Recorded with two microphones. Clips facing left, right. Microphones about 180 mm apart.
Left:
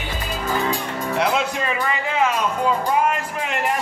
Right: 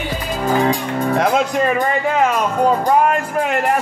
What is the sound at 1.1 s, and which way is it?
Music, 45° right (ahead or behind).